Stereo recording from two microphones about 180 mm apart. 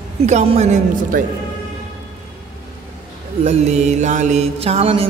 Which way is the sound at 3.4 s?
40° right (ahead or behind).